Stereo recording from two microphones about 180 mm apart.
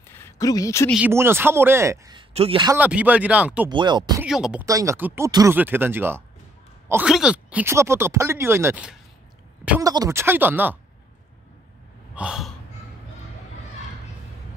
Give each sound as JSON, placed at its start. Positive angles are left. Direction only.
{"t": 0.1, "sound": "a sound", "side_deg": 15}
{"t": 0.9, "sound": "speech", "side_deg": -10}
{"t": 2.3, "sound": "a man's voice", "side_deg": -30}
{"t": 2.7, "sound": "speech", "side_deg": -10}
{"t": 3.6, "sound": "speech", "side_deg": -25}
{"t": 4.2, "sound": "speech", "side_deg": -5}
{"t": 4.6, "sound": "speech", "side_deg": -15}
{"t": 12.2, "sound": "gasp", "side_deg": -5}